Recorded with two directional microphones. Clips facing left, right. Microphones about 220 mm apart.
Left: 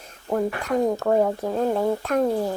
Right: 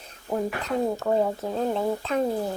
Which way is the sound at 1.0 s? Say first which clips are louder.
Left 3 dB; 90° left.